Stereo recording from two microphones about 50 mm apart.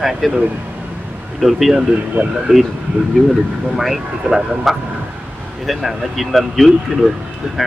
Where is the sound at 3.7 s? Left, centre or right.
Centre.